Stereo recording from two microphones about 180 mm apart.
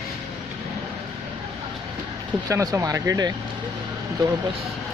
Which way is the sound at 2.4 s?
15° right (ahead or behind).